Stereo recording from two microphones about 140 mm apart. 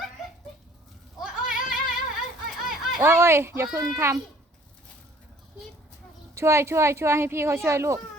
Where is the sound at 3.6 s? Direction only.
5° right (ahead or behind).